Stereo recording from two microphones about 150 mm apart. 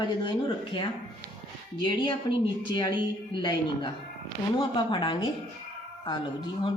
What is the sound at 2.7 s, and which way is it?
Speech, 30° left (ahead or behind).